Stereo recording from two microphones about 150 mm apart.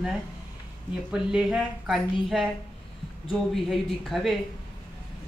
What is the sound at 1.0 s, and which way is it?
Speech, 5° right (ahead or behind).